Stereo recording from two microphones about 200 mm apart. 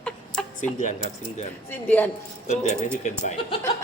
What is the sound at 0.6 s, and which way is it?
Speech, 40° left (ahead or behind).